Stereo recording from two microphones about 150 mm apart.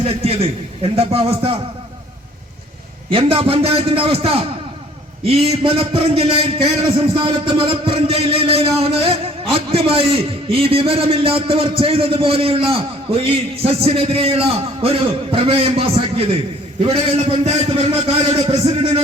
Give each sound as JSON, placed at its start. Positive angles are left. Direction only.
{"t": 0.0, "sound": "speech", "side_deg": -40}
{"t": 3.1, "sound": "a man's voice", "side_deg": -40}